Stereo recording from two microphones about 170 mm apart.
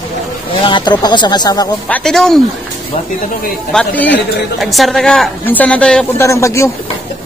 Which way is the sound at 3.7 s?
5° left (ahead or behind).